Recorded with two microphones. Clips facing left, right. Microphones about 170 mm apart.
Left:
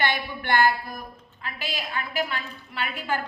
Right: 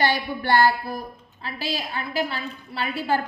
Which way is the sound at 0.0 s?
35° right (ahead or behind).